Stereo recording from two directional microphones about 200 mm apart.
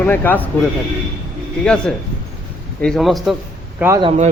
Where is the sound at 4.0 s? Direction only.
30° right (ahead or behind).